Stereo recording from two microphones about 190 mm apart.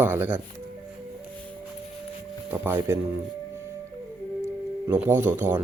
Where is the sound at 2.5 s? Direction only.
10° right (ahead or behind).